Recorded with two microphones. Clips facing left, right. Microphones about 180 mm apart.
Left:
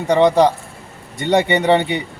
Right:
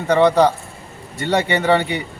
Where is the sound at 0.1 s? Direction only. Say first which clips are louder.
Left 1 dB; 20° left (ahead or behind).